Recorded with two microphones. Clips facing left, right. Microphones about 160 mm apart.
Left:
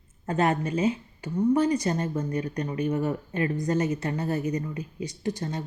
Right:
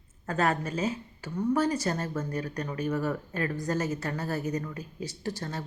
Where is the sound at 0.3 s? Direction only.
20° left (ahead or behind).